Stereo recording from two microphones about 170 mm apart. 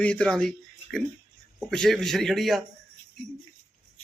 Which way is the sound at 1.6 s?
5° left (ahead or behind).